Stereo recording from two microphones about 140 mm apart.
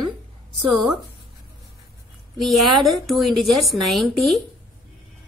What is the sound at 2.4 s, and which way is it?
A woman's voice, centre (ahead or behind).